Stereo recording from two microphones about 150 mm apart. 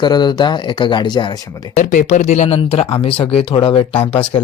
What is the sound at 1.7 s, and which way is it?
A man's voice, 60° left (ahead or behind).